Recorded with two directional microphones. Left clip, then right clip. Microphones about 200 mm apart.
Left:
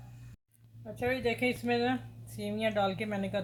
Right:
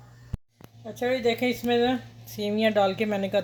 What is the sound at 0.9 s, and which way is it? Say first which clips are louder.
Speech: right 7 dB; 35° right (ahead or behind).